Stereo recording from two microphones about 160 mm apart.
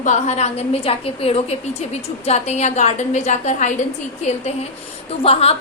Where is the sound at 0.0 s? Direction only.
45° left (ahead or behind).